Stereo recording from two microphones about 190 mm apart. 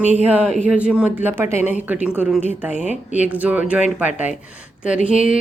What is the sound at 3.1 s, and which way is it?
A woman's voice, 10° right (ahead or behind).